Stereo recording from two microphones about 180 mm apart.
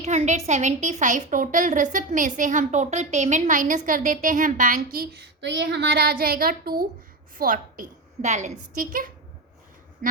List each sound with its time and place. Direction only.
0.0 s a woman's voice: 40° right (ahead or behind)